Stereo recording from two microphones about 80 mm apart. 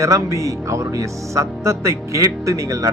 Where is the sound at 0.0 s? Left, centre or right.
Right.